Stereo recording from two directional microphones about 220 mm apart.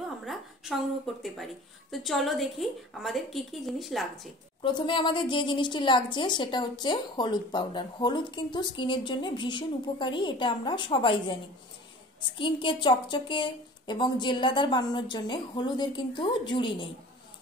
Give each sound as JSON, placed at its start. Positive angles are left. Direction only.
{"t": 0.2, "sound": "a sound", "side_deg": 0}
{"t": 1.2, "sound": "a woman's voice", "side_deg": 0}
{"t": 4.6, "sound": "a woman's voice", "side_deg": 20}
{"t": 12.4, "sound": "a woman's voice", "side_deg": 20}